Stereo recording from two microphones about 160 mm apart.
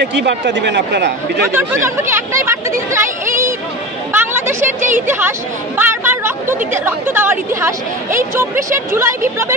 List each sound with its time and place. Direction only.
0.0 s speech: 90° right
1.5 s speech: 15° right (ahead or behind)
4.1 s a sound: 15° right (ahead or behind)
4.9 s speech: 15° right (ahead or behind)
8.7 s speech: 15° right (ahead or behind)